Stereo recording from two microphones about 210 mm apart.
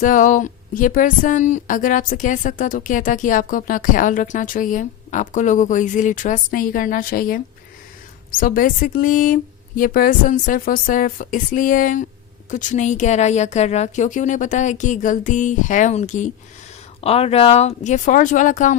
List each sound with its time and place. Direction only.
0.0 s speech: 40° left (ahead or behind)